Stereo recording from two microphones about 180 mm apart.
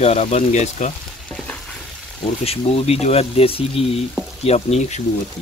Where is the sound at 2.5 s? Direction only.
35° left (ahead or behind).